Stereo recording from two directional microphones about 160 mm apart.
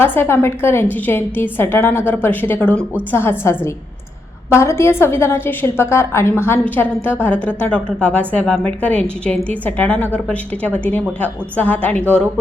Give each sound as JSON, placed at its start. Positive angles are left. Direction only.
{"t": 0.0, "sound": "a woman's voice", "side_deg": 15}
{"t": 11.2, "sound": "a woman's voice", "side_deg": 10}